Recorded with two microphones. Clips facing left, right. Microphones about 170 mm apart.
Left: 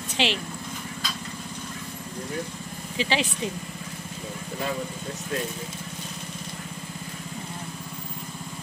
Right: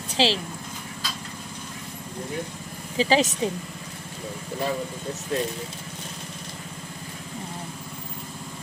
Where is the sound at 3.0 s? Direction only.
40° right (ahead or behind).